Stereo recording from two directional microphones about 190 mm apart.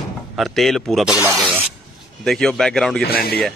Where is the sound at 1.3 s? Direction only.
5° right (ahead or behind).